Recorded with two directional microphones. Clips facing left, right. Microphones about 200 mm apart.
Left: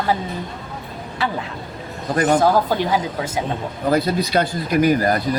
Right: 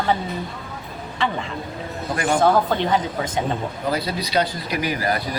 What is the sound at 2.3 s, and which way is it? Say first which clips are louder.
Speech: right 2 dB; 5° left (ahead or behind).